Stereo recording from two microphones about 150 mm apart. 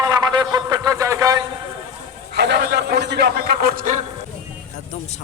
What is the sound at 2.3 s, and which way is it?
A man's voice, 90° right.